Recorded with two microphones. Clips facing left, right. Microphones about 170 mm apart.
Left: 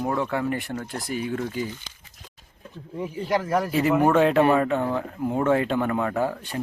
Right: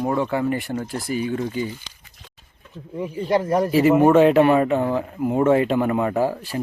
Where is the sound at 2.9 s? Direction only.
20° right (ahead or behind).